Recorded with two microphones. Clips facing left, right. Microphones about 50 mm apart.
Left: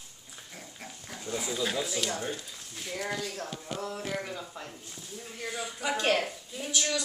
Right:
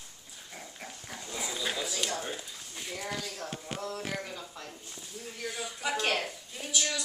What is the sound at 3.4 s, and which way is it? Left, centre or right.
Speech, right.